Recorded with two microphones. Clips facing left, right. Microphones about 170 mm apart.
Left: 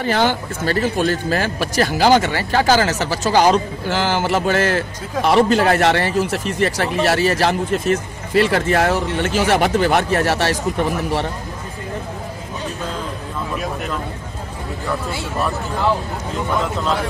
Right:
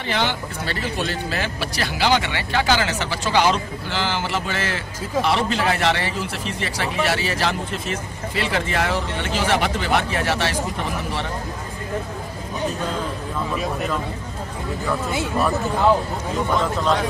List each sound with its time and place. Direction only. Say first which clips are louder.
0.0 s speech: left 6 dB; 45° left (ahead or behind)
13.5 s speech: even; centre (ahead or behind)
16.4 s speech: even; centre (ahead or behind)